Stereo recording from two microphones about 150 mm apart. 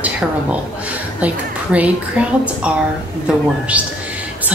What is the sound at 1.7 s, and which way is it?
Speech, 10° right (ahead or behind).